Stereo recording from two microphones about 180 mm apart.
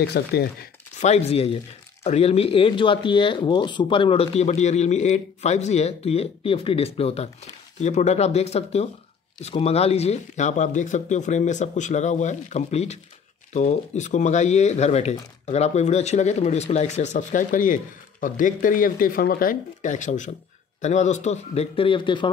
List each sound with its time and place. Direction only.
0.0 s speech: 65° left (ahead or behind)
1.0 s speech: 35° left (ahead or behind)